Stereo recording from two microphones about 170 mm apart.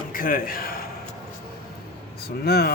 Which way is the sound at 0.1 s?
55° left (ahead or behind).